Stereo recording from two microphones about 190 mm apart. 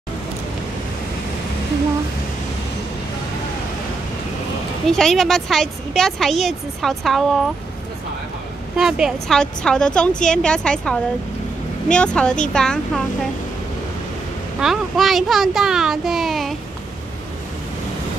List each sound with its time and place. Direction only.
4.8 s speech: centre (ahead or behind)
8.7 s speech: 5° right (ahead or behind)
14.6 s speech: centre (ahead or behind)